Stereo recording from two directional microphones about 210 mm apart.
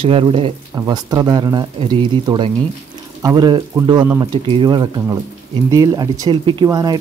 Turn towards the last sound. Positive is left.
turn(degrees=-20)  # may be behind; listen again after turning